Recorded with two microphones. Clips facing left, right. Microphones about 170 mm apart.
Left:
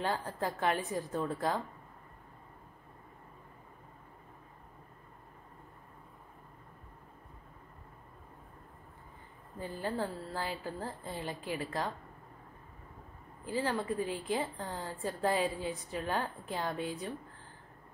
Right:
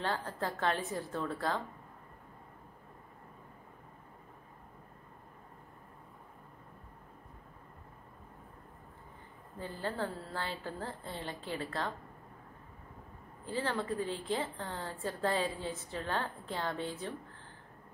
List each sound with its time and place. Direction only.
0.0 s a woman's voice: 15° left (ahead or behind)
9.6 s a woman's voice: 15° left (ahead or behind)
13.5 s a woman's voice: 10° left (ahead or behind)